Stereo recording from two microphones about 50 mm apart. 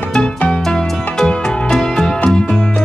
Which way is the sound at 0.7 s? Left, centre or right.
Centre.